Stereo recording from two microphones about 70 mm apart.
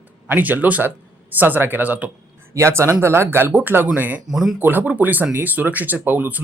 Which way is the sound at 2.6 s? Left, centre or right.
Right.